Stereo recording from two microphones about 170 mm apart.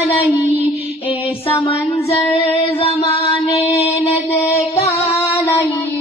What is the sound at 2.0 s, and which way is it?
Music, 35° left (ahead or behind).